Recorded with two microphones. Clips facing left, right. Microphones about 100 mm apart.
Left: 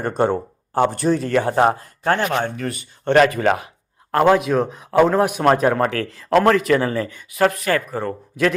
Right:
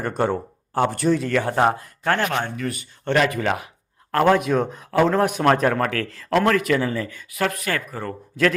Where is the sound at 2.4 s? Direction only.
40° left (ahead or behind).